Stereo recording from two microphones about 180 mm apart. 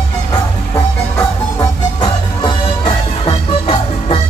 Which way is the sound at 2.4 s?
30° left (ahead or behind).